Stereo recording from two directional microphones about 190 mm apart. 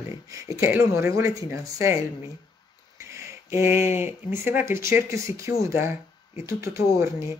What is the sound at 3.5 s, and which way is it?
Speech, 10° right (ahead or behind).